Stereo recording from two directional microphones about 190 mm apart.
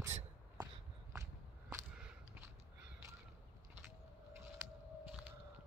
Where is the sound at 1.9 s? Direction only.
5° right (ahead or behind).